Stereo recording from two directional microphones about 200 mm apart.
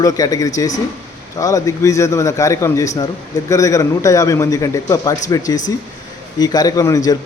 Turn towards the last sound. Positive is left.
turn(degrees=15)  # may be behind; listen again after turning